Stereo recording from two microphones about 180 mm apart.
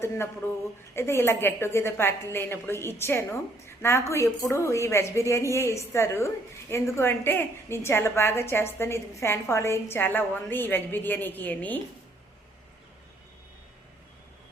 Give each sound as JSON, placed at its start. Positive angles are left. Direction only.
{"t": 0.0, "sound": "a woman's voice", "side_deg": 15}